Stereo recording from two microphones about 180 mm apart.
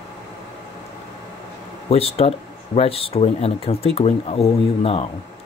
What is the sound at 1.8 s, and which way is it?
Speech, 35° left (ahead or behind).